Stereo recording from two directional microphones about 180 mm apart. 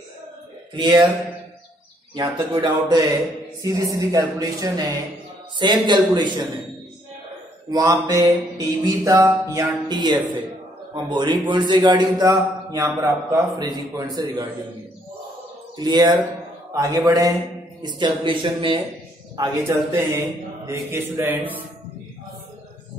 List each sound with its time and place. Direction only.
0.7 s music: 25° right (ahead or behind)
2.6 s music: 25° right (ahead or behind)
7.7 s music: 20° right (ahead or behind)
15.8 s music: 25° right (ahead or behind)
20.6 s mantra: 15° right (ahead or behind)